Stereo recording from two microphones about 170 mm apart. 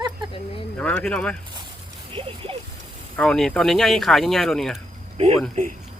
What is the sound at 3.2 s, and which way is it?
Speech, 5° left (ahead or behind).